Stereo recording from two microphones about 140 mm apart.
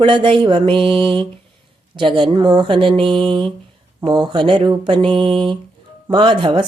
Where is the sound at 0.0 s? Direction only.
35° right (ahead or behind).